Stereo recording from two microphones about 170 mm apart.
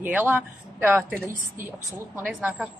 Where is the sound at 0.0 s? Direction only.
10° right (ahead or behind).